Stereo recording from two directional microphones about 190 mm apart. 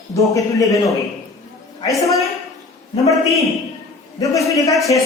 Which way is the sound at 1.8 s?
15° left (ahead or behind).